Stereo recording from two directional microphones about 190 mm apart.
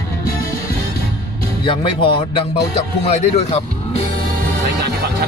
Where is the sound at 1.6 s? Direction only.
25° left (ahead or behind).